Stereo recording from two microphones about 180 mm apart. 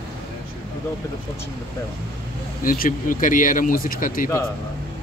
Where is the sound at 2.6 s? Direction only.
50° left (ahead or behind).